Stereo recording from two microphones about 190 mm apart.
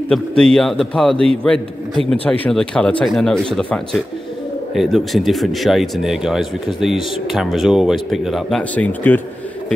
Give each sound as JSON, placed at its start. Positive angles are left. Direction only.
{"t": 0.1, "sound": "speech", "side_deg": 5}
{"t": 1.1, "sound": "a man's voice", "side_deg": -30}
{"t": 1.4, "sound": "speech", "side_deg": 5}